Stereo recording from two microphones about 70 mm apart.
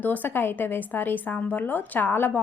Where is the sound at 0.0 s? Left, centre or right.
Left.